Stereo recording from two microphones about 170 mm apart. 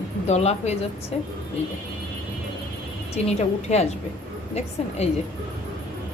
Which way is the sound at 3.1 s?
40° left (ahead or behind).